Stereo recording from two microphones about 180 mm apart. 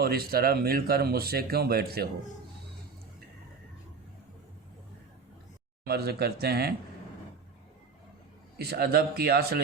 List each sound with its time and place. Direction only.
0.0 s speech: 60° right (ahead or behind)
5.8 s speech: 60° right (ahead or behind)
8.5 s speech: 60° right (ahead or behind)